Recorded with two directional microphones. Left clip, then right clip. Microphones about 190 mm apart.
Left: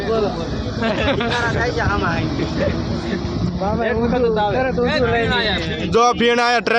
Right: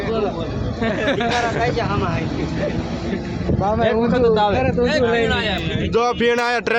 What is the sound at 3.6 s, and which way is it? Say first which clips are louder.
Speech: right 2 dB; 25° right (ahead or behind).